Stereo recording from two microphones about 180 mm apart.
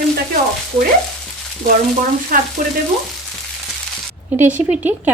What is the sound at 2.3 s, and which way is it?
Frying, 50° right (ahead or behind).